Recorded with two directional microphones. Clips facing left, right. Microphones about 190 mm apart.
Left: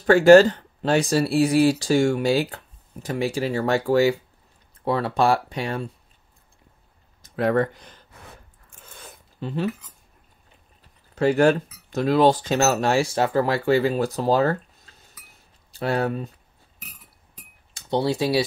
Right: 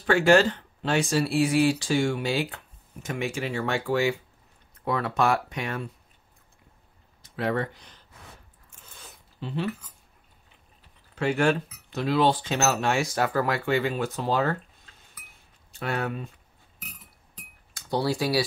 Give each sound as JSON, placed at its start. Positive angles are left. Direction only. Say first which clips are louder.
{"t": 0.0, "sound": "speech", "louder": "left 7 dB", "side_deg": 40}
{"t": 7.2, "sound": "speech", "louder": "left 6 dB", "side_deg": 45}
{"t": 8.9, "sound": "zipper", "louder": "left 5 dB", "side_deg": 50}
{"t": 11.1, "sound": "speech", "louder": "left 6 dB", "side_deg": 40}
{"t": 17.7, "sound": "speech", "louder": "left 4 dB", "side_deg": 25}